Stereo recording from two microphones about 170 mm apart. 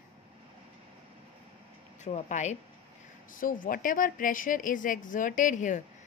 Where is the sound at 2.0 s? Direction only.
45° left (ahead or behind).